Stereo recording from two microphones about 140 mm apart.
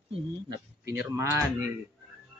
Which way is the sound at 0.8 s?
20° right (ahead or behind).